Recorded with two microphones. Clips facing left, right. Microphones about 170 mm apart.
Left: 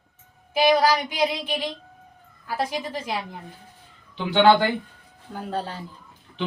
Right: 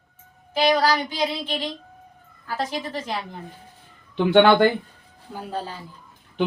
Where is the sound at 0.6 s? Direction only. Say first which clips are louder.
Left 1 dB; 10° left (ahead or behind).